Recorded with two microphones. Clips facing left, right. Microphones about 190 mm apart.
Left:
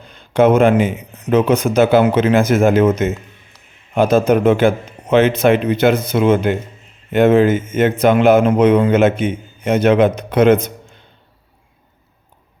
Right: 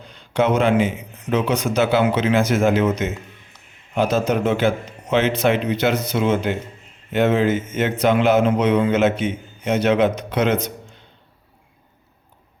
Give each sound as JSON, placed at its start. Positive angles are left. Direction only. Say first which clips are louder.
{"t": 0.1, "sound": "speech", "louder": "left 7 dB", "side_deg": 50}